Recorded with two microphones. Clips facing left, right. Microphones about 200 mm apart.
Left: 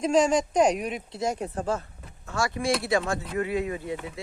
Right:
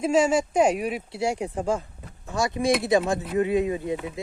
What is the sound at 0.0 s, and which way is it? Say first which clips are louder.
Speech: right 1 dB; 5° right (ahead or behind).